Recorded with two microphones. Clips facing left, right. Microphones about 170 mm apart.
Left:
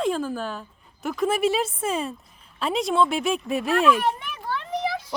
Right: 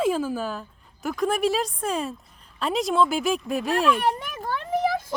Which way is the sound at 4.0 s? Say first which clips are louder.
Right 1 dB; 40° right (ahead or behind).